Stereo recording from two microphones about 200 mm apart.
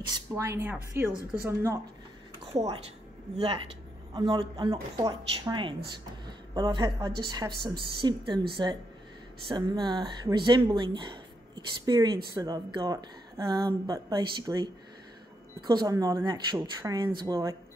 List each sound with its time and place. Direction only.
0.3 s speech: 15° right (ahead or behind)
2.5 s speech: 30° right (ahead or behind)